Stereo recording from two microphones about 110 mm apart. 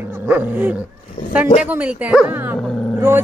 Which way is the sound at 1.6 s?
10° right (ahead or behind).